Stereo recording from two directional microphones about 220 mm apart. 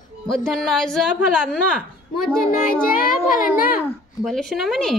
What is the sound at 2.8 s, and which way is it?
Speech, 40° left (ahead or behind).